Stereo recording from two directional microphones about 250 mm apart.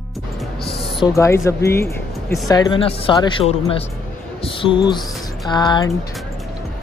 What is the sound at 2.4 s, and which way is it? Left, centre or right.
Speech, centre.